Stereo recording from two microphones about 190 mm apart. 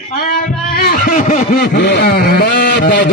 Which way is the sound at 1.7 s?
60° left (ahead or behind).